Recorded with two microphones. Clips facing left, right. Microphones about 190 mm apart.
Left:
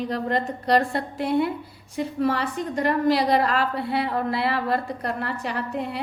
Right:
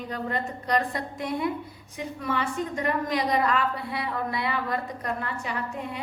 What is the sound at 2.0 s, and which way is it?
A woman's voice, 35° left (ahead or behind).